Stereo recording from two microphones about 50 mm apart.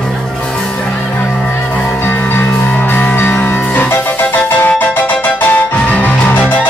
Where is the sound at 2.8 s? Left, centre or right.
Left.